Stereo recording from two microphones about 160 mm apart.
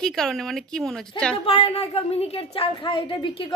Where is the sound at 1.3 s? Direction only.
35° left (ahead or behind).